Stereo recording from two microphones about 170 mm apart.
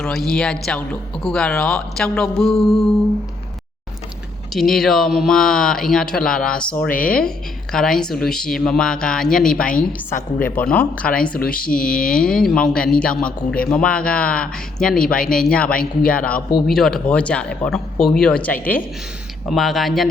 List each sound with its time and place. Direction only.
0.0 s a woman's voice: 5° left (ahead or behind)
4.5 s a woman's voice: centre (ahead or behind)
6.9 s speech: 55° left (ahead or behind)
7.3 s a woman's voice: 5° left (ahead or behind)
11.3 s speech: 60° left (ahead or behind)
11.9 s a woman's voice: 5° left (ahead or behind)